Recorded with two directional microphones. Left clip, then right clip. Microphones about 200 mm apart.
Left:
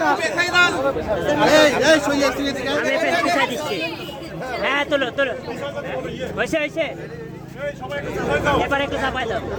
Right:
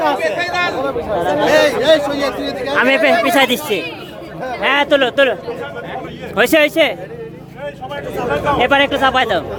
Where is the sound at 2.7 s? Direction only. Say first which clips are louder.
Right 8 dB; 60° right (ahead or behind).